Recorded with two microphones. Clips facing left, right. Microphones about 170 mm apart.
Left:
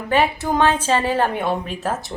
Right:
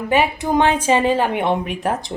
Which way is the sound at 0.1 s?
15° right (ahead or behind).